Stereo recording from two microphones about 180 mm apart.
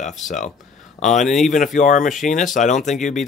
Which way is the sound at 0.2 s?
45° left (ahead or behind).